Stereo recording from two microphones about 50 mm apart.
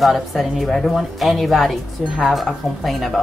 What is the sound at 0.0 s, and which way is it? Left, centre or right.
A woman's voice, centre.